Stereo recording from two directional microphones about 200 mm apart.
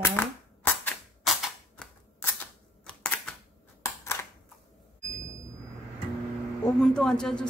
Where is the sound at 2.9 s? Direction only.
5° left (ahead or behind).